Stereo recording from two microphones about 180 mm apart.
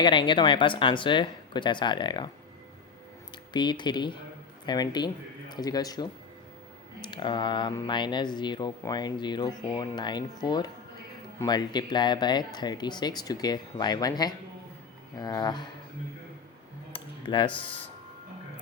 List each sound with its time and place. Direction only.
0.0 s speech: 25° left (ahead or behind)
3.3 s speech: 25° left (ahead or behind)
16.9 s cutlery: 25° left (ahead or behind)